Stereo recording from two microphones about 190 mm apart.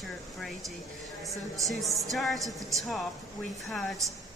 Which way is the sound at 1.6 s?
Centre (ahead or behind).